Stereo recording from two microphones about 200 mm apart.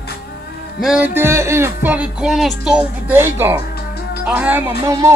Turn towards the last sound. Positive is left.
turn(degrees=-10)  # may be behind; listen again after turning